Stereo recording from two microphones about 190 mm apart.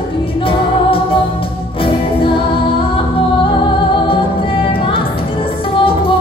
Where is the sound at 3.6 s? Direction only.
25° left (ahead or behind).